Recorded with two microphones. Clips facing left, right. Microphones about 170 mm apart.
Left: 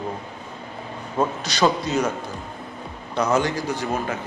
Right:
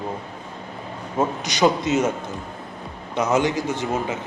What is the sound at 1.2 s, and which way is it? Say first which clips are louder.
Speech: right 1 dB; 20° right (ahead or behind).